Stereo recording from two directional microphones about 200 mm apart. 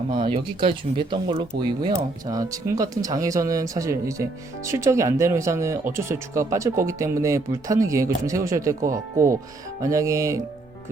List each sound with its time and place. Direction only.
0.1 s speech: 25° right (ahead or behind)